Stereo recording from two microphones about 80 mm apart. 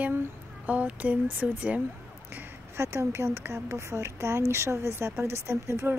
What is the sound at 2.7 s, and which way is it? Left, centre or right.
A woman's voice, right.